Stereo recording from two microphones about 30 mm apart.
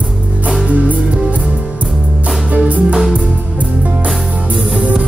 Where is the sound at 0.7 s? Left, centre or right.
Right.